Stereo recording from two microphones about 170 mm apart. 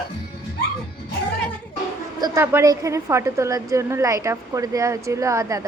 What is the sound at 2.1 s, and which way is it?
A woman's voice, 20° right (ahead or behind).